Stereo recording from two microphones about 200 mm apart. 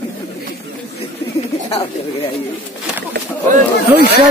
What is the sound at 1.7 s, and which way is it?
Speech, 30° left (ahead or behind).